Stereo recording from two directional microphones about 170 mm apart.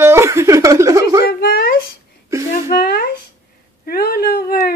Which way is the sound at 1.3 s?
70° left (ahead or behind).